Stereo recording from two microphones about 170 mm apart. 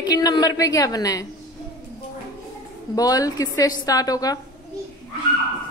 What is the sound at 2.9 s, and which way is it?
A woman's voice, 20° left (ahead or behind).